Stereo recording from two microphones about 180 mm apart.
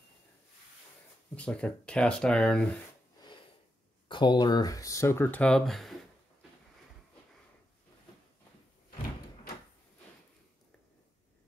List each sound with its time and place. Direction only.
1.3 s speech: 5° left (ahead or behind)
4.1 s speech: 25° left (ahead or behind); by 5.9 s centre (ahead or behind)